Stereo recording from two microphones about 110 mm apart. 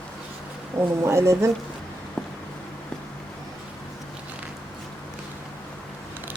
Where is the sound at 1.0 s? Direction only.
25° right (ahead or behind).